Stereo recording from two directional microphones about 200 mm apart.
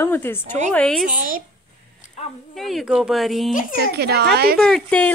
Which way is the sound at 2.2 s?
35° left (ahead or behind).